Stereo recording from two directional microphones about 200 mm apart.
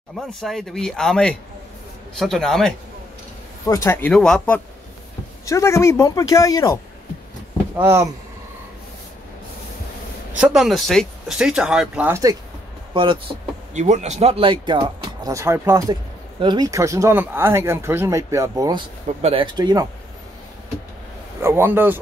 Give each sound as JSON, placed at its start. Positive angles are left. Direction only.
{"t": 0.1, "sound": "speech", "side_deg": 0}
{"t": 3.6, "sound": "speech", "side_deg": 15}
{"t": 5.4, "sound": "speech", "side_deg": 15}
{"t": 7.7, "sound": "speech", "side_deg": -10}
{"t": 10.4, "sound": "speech", "side_deg": 0}
{"t": 12.9, "sound": "speech", "side_deg": -25}
{"t": 13.7, "sound": "speech", "side_deg": -35}
{"t": 21.4, "sound": "speech", "side_deg": -10}